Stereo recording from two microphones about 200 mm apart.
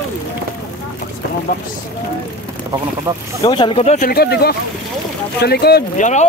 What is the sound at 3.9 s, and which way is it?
Speech, 50° left (ahead or behind).